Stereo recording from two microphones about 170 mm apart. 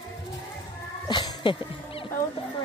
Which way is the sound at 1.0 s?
30° left (ahead or behind).